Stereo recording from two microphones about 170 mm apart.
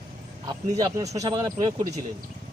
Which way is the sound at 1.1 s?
20° right (ahead or behind).